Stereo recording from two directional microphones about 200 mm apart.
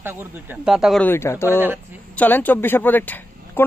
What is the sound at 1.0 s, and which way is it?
Speech, 10° left (ahead or behind).